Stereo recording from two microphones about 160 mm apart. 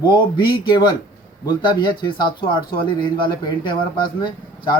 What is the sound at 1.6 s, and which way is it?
Speech, 30° left (ahead or behind).